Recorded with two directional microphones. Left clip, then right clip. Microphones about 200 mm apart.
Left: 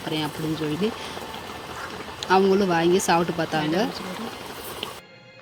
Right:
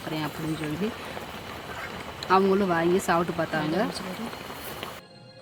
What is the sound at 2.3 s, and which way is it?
Speech, centre (ahead or behind).